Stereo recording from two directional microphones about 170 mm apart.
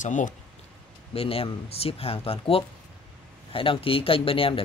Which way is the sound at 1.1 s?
35° left (ahead or behind).